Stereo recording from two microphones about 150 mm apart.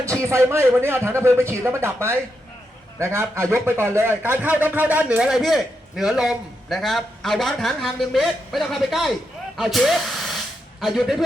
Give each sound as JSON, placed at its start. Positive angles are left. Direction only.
{"t": 0.0, "sound": "a man's voice", "side_deg": -20}